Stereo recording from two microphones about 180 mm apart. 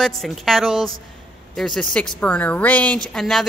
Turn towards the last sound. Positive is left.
turn(degrees=0)  # may be behind; listen again after turning